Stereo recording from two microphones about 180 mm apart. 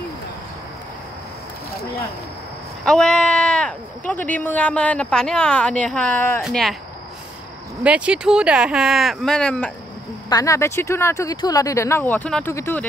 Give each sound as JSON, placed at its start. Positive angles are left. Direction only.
{"t": 2.8, "sound": "speech", "side_deg": 5}
{"t": 7.8, "sound": "speech", "side_deg": -5}
{"t": 10.3, "sound": "speech", "side_deg": 15}